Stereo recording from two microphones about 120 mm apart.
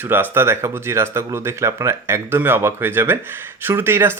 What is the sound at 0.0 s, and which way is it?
Speech, 15° right (ahead or behind).